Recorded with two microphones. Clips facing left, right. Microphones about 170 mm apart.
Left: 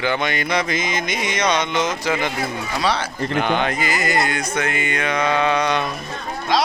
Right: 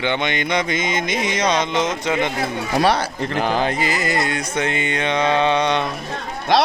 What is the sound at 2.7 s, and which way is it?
Speech, 55° right (ahead or behind).